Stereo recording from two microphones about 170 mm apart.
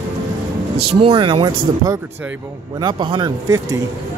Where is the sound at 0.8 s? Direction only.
35° right (ahead or behind).